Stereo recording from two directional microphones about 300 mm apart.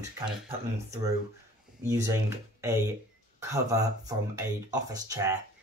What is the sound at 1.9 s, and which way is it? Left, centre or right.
Speech, centre.